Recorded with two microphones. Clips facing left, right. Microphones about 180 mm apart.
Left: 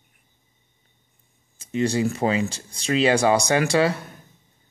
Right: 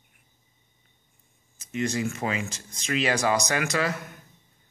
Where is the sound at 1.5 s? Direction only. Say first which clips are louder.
Left 5 dB; 30° left (ahead or behind).